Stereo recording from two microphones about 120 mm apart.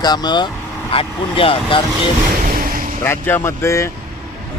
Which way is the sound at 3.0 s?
20° left (ahead or behind).